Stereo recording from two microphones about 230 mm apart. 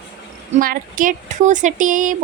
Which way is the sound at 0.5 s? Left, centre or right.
Right.